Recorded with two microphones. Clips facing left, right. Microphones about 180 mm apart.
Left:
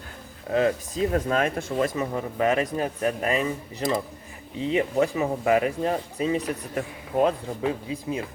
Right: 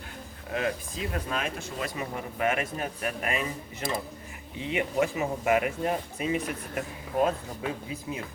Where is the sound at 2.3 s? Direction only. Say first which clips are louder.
Left 5 dB; 35° left (ahead or behind).